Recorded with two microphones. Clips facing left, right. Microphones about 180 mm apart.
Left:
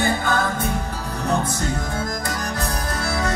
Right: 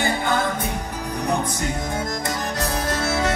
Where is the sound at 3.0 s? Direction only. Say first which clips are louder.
Right 1 dB; 25° right (ahead or behind).